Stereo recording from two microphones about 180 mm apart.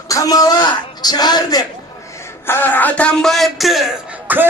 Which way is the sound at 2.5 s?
10° left (ahead or behind).